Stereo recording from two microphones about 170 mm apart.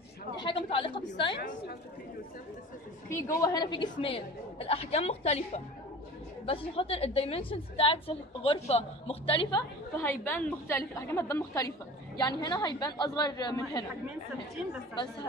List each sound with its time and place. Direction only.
0.4 s chatter: 30° left (ahead or behind)
1.3 s a woman's voice: 90° left
3.3 s a woman's voice: 20° left (ahead or behind)
10.0 s a woman's voice: 10° left (ahead or behind)